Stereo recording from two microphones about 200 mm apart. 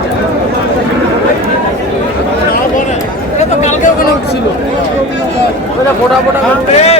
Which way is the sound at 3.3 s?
35° left (ahead or behind).